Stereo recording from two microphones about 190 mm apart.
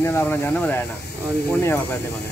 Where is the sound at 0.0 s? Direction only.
10° left (ahead or behind).